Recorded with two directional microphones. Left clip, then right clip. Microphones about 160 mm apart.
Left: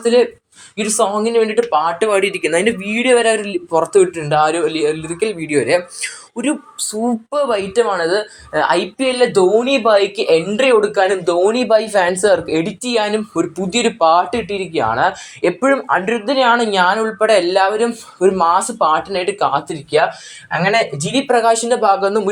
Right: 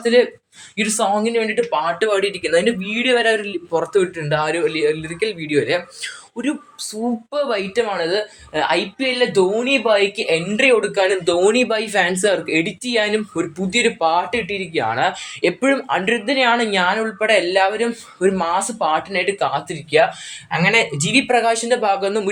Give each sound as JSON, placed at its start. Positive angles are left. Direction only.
{"t": 0.0, "sound": "speech", "side_deg": 10}
{"t": 11.3, "sound": "speech", "side_deg": -15}
{"t": 21.3, "sound": "speech", "side_deg": 15}